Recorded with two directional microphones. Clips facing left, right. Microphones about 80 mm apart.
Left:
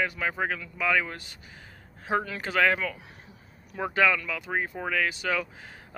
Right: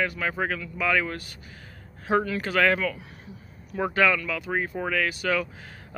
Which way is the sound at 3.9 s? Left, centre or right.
Centre.